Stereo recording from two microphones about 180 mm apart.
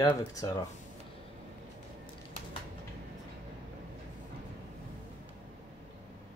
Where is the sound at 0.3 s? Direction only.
20° left (ahead or behind).